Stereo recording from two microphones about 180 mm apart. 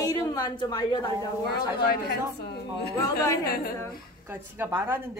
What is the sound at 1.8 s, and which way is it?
Speech, 65° left (ahead or behind).